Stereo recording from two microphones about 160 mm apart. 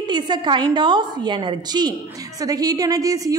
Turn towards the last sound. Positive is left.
turn(degrees=-20)  # may be behind; listen again after turning